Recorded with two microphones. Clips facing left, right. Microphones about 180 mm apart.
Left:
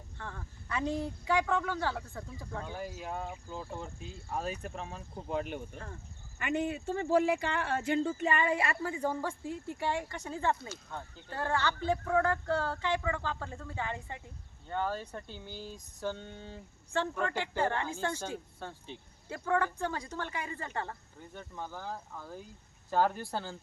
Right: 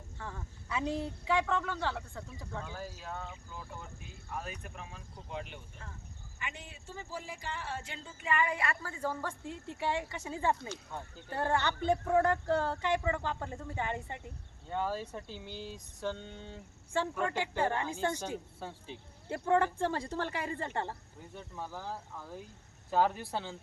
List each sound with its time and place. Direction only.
0.2 s a woman's voice: 5° right (ahead or behind); by 3.2 s 15° left (ahead or behind)
3.2 s speech: 25° left (ahead or behind)
5.1 s speech: 45° left (ahead or behind)
8.2 s speech: 30° left (ahead or behind); by 9.3 s 15° left (ahead or behind)
9.6 s speech: centre (ahead or behind)
11.3 s speech: 20° right (ahead or behind)
14.7 s a woman's voice: 10° right (ahead or behind)
16.9 s a woman's voice: 10° right (ahead or behind)
19.3 s speech: 25° right (ahead or behind)
21.3 s a woman's voice: 5° right (ahead or behind)